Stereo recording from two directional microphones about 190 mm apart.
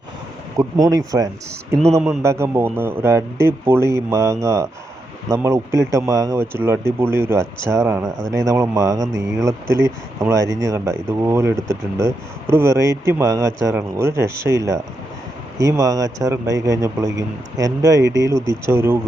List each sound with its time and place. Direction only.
0.5 s speech: 20° right (ahead or behind)